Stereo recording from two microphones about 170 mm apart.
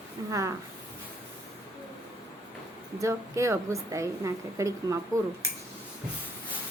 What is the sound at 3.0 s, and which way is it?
A woman's voice, 15° right (ahead or behind).